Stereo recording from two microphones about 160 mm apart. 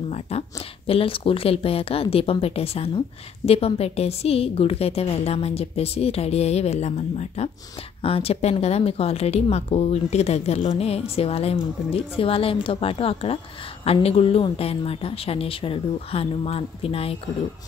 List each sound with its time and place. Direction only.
0.1 s a woman's voice: 40° left (ahead or behind)